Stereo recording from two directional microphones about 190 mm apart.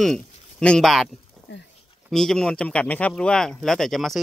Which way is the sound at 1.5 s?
65° left (ahead or behind).